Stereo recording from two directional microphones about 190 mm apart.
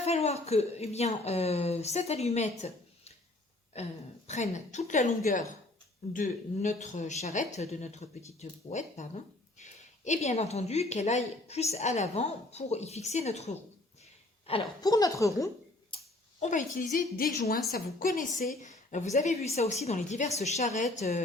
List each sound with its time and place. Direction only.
0.0 s speech: 35° left (ahead or behind)
14.4 s a woman's voice: 25° left (ahead or behind)
16.4 s a woman's voice: 40° left (ahead or behind)